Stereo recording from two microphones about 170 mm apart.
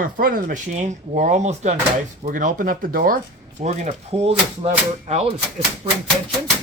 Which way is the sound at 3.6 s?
40° right (ahead or behind).